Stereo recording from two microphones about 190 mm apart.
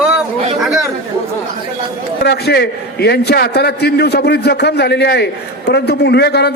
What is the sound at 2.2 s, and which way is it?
A man's voice, 60° left (ahead or behind).